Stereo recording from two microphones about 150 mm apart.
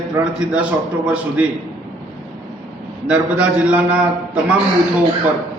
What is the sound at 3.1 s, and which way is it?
A man's voice, 10° right (ahead or behind).